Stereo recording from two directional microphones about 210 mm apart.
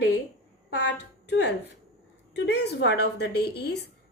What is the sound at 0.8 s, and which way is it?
A woman's voice, 55° left (ahead or behind).